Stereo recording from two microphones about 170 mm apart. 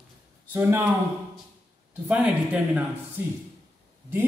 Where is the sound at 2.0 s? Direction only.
10° right (ahead or behind).